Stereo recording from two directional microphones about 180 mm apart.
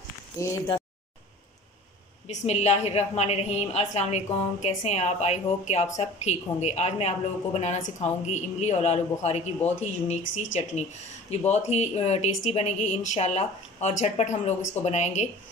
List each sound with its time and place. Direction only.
0.4 s speech: 15° left (ahead or behind)
2.2 s a woman's voice: 35° left (ahead or behind)